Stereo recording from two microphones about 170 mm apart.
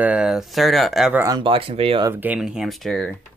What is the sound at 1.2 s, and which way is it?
Speech, 25° right (ahead or behind).